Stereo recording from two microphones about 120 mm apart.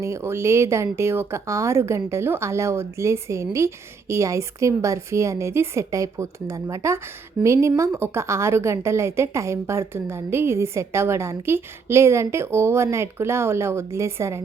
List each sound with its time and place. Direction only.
0.0 s a woman's voice: 25° right (ahead or behind)